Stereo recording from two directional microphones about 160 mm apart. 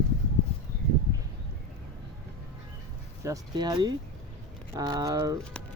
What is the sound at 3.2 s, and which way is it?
Speech, 25° right (ahead or behind).